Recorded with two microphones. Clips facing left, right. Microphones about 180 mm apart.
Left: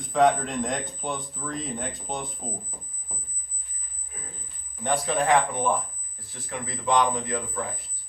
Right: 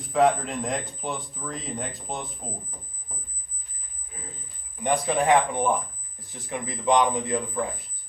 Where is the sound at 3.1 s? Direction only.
5° left (ahead or behind).